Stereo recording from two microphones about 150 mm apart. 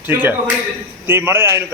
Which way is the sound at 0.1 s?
15° right (ahead or behind).